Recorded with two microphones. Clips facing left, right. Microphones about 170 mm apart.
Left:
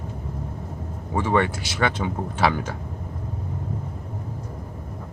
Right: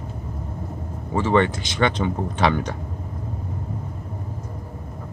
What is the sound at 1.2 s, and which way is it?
Speech, 10° left (ahead or behind).